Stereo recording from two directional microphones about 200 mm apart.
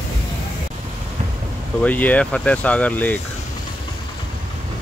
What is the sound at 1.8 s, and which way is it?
Speech, 5° left (ahead or behind).